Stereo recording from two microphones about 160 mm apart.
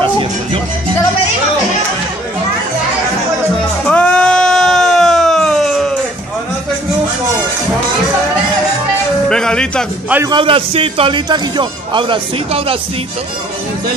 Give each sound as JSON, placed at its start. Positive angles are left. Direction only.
{"t": 3.8, "sound": "bleat", "side_deg": 5}
{"t": 9.3, "sound": "speech", "side_deg": 5}
{"t": 10.2, "sound": "speech", "side_deg": -30}